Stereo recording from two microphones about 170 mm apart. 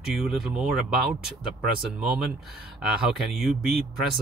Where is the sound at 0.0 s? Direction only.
Centre (ahead or behind).